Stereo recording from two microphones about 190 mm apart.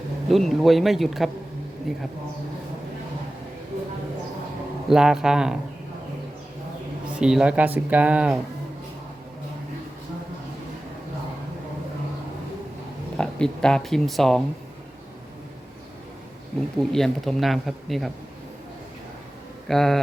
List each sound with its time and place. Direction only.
0.3 s speech: centre (ahead or behind)
4.9 s speech: 5° right (ahead or behind)
7.2 s speech: 5° right (ahead or behind)
13.1 s speech: 5° left (ahead or behind)
16.9 s speech: centre (ahead or behind)
19.6 s speech: centre (ahead or behind)